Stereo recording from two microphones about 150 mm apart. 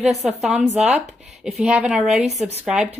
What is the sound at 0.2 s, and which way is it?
A woman's voice, 5° right (ahead or behind).